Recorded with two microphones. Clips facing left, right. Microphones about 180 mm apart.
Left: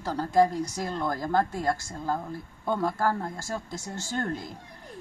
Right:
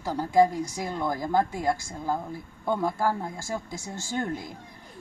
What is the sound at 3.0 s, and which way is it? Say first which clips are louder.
Speech: even; 10° right (ahead or behind).